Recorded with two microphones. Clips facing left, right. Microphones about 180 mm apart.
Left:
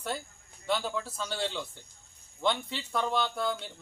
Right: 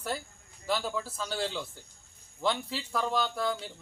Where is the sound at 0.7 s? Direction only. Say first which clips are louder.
Even; centre (ahead or behind).